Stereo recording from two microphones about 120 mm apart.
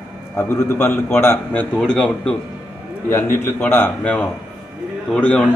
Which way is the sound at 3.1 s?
15° left (ahead or behind).